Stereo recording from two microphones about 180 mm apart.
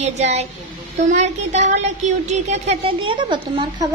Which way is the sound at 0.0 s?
40° right (ahead or behind).